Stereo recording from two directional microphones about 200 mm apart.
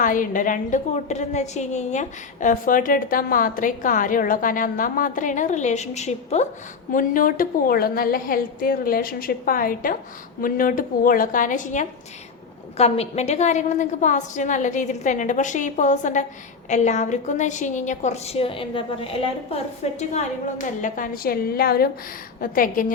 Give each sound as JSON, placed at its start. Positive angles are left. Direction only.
{"t": 0.0, "sound": "a woman's voice", "side_deg": 40}